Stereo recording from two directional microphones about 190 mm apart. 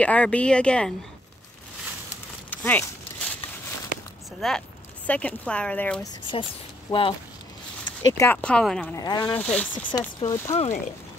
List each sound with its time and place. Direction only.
0.0 s speech: 5° left (ahead or behind)
2.5 s speech: 10° left (ahead or behind)
4.4 s speech: 5° left (ahead or behind)
6.9 s speech: 25° left (ahead or behind)
8.0 s speech: 15° left (ahead or behind)
8.9 s speech: 20° left (ahead or behind)
9.4 s speech: 5° left (ahead or behind)
9.9 s speech: 20° left (ahead or behind)
10.5 s speech: 35° left (ahead or behind)